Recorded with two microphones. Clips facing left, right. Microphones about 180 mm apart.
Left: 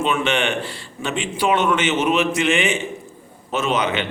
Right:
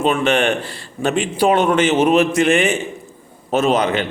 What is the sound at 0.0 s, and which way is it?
A man's voice, 40° right (ahead or behind).